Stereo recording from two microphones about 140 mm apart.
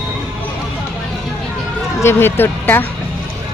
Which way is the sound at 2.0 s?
15° left (ahead or behind).